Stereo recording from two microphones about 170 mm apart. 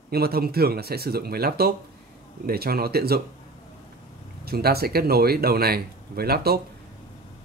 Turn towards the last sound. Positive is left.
turn(degrees=-65)  # may be behind; listen again after turning